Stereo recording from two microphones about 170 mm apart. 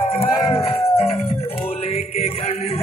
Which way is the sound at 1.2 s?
35° left (ahead or behind).